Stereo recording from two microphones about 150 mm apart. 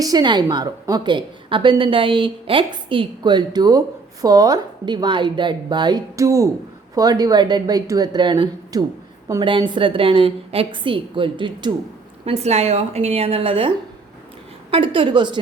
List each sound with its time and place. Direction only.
0.0 s a woman's voice: 25° right (ahead or behind)
12.2 s a woman's voice: 45° right (ahead or behind)